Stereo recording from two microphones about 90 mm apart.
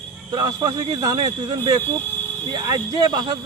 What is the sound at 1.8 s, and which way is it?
Speech, 20° left (ahead or behind).